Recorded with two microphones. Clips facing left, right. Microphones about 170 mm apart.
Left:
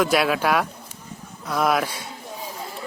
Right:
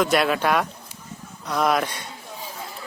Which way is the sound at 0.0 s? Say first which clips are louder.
Even; centre (ahead or behind).